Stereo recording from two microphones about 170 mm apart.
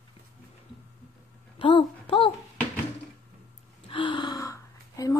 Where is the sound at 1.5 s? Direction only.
30° left (ahead or behind).